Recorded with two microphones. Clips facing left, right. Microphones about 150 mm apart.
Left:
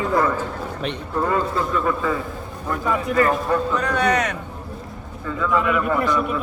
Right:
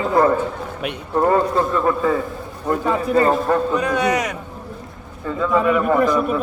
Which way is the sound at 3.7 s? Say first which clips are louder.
Right 1 dB; 10° right (ahead or behind).